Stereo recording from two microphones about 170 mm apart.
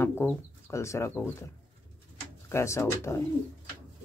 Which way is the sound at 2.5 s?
15° left (ahead or behind).